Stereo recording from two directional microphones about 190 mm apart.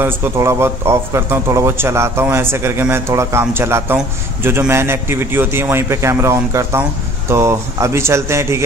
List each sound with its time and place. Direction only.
0.0 s a man's voice: 15° right (ahead or behind)